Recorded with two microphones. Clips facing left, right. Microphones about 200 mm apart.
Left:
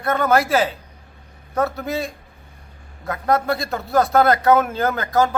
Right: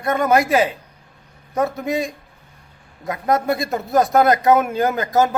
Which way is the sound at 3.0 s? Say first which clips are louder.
Right 1 dB; 20° right (ahead or behind).